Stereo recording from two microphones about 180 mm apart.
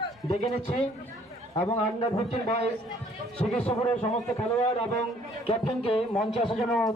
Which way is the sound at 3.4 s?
20° left (ahead or behind).